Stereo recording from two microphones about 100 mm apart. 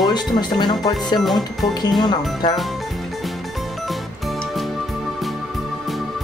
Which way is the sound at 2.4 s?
45° left (ahead or behind).